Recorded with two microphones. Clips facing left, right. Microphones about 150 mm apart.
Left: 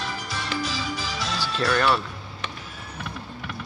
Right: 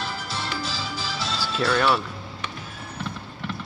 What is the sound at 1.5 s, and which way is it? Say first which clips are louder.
Speech: right 1 dB; 5° right (ahead or behind).